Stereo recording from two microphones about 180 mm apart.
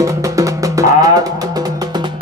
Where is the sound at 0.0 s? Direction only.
20° right (ahead or behind).